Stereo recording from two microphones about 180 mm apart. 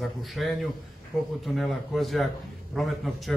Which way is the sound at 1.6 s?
Centre (ahead or behind).